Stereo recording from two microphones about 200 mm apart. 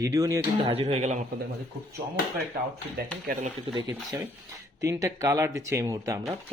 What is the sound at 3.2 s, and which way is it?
Speech, 40° right (ahead or behind).